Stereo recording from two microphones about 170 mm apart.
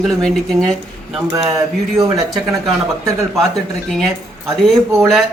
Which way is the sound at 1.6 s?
20° right (ahead or behind).